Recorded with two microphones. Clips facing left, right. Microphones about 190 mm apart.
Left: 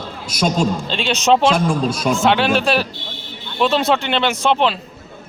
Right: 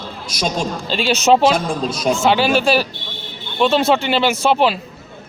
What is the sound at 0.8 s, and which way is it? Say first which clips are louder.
Speech: right 6 dB; 5° right (ahead or behind).